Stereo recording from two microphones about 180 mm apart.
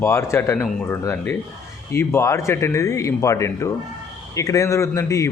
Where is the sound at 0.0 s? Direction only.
15° left (ahead or behind).